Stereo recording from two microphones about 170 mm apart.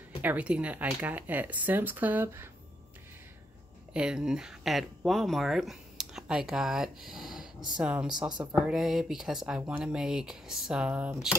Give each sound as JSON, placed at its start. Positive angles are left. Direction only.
{"t": 0.2, "sound": "speech", "side_deg": -10}
{"t": 3.9, "sound": "speech", "side_deg": -5}
{"t": 8.3, "sound": "speech", "side_deg": -25}
{"t": 8.5, "sound": "speech", "side_deg": 0}